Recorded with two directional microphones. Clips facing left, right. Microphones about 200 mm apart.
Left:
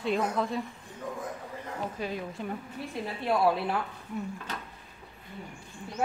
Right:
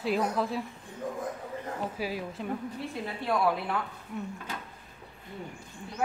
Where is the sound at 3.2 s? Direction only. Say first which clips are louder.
Left 2 dB; 25° left (ahead or behind).